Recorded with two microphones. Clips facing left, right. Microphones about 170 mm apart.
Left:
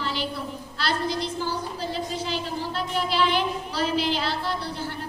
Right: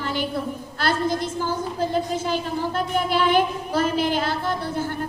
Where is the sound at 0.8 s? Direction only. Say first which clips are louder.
Right 4 dB; 50° right (ahead or behind).